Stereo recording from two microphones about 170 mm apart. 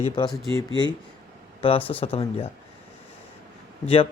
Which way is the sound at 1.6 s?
30° left (ahead or behind).